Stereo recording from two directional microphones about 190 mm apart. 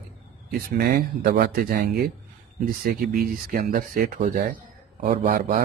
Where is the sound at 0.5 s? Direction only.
55° right (ahead or behind).